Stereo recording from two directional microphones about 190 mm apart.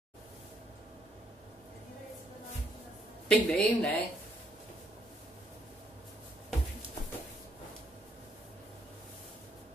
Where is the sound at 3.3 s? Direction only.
5° left (ahead or behind).